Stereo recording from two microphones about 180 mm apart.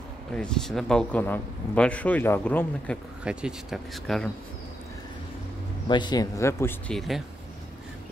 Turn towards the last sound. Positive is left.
turn(degrees=0)  # may be behind; listen again after turning